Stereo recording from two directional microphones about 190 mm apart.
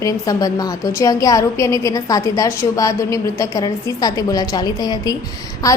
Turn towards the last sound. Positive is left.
turn(degrees=15)  # may be behind; listen again after turning